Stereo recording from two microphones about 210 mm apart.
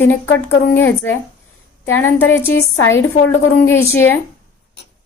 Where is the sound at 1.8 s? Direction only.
75° left (ahead or behind).